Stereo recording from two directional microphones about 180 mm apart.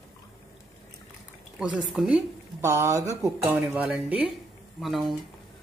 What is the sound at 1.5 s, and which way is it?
Speech, 5° right (ahead or behind).